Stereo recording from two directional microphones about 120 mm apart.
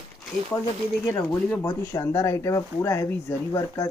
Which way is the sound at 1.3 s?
10° left (ahead or behind).